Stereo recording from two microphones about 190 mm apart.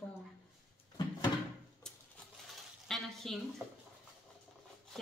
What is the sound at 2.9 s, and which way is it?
Speech, centre (ahead or behind).